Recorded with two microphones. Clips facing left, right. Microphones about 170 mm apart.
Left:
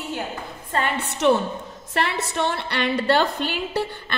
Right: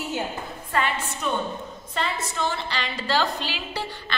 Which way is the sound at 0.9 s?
75° left (ahead or behind).